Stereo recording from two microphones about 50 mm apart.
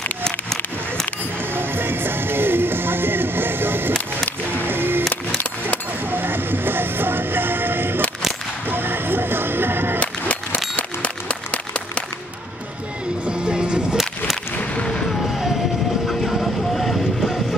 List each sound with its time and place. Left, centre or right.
0.2 s a sound: centre
1.5 s music: right
6.1 s music: right
9.9 s music: left
10.8 s a sound: left
13.2 s music: centre
14.8 s a sound: centre
16.1 s vehicle: centre
17.2 s music: centre